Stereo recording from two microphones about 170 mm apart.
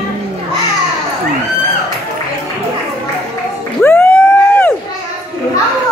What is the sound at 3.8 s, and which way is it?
Emergency vehicle, 10° left (ahead or behind).